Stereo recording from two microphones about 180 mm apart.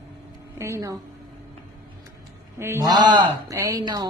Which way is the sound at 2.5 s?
15° right (ahead or behind).